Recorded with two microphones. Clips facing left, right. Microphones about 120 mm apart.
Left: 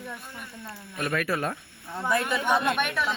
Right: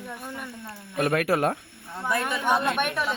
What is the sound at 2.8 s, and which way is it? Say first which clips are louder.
Speech: right 1 dB; 45° right (ahead or behind).